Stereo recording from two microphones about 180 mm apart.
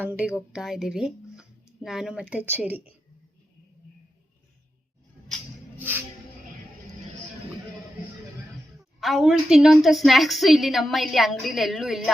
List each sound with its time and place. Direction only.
0.0 s a woman's voice: 10° right (ahead or behind)
5.7 s music: 10° right (ahead or behind)
8.8 s a woman's voice: centre (ahead or behind)